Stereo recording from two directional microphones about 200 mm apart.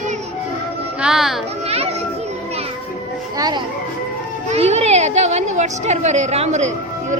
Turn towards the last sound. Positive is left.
turn(degrees=-35)  # may be behind; listen again after turning